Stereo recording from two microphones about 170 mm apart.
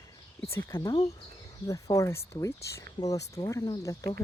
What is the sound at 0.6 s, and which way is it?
Speech, 20° left (ahead or behind).